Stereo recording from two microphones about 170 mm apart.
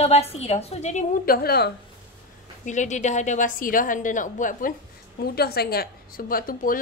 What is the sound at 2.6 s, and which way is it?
A woman's voice, 45° left (ahead or behind).